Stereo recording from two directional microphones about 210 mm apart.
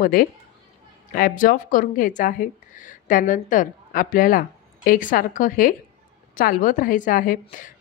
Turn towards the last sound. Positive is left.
turn(degrees=40)  # may be behind; listen again after turning